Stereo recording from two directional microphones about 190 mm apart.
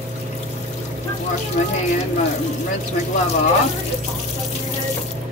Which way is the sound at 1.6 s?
40° left (ahead or behind).